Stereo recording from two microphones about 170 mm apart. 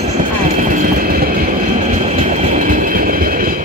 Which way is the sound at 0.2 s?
50° right (ahead or behind).